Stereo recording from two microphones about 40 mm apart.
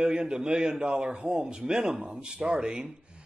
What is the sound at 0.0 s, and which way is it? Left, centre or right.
A man's voice, right.